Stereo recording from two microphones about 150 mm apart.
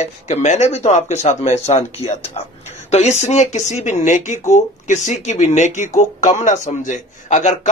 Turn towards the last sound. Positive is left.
turn(degrees=55)  # may be behind; listen again after turning